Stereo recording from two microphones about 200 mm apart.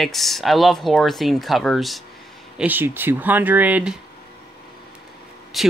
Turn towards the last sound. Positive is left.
turn(degrees=0)  # may be behind; listen again after turning